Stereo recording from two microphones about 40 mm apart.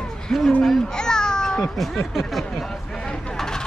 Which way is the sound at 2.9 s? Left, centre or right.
Centre.